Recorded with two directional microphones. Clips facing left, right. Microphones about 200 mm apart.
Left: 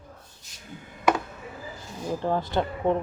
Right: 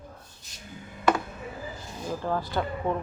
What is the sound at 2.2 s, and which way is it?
Speech, 20° left (ahead or behind).